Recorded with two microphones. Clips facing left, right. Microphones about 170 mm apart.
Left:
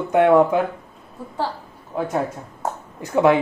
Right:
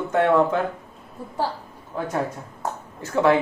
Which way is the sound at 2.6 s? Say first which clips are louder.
Left 3 dB; 15° left (ahead or behind).